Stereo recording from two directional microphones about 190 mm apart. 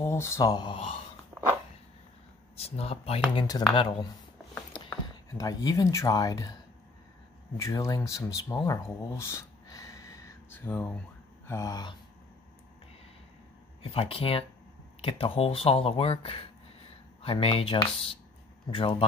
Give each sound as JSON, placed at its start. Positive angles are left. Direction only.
{"t": 0.0, "sound": "speech", "side_deg": 15}
{"t": 2.5, "sound": "speech", "side_deg": 30}
{"t": 5.4, "sound": "speech", "side_deg": 20}
{"t": 7.6, "sound": "speech", "side_deg": 15}
{"t": 13.9, "sound": "speech", "side_deg": 30}